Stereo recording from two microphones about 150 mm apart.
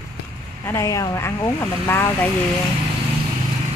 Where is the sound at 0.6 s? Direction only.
20° left (ahead or behind).